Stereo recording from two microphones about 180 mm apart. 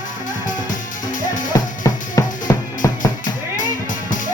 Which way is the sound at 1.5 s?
20° left (ahead or behind).